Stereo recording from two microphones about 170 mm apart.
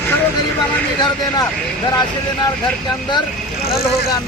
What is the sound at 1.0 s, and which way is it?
Speech, 25° left (ahead or behind).